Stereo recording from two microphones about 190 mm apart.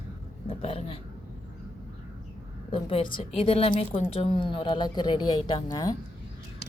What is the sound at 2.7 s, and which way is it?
A woman's voice, 30° left (ahead or behind).